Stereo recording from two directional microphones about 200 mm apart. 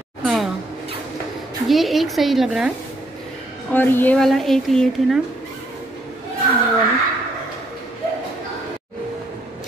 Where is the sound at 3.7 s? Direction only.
10° left (ahead or behind).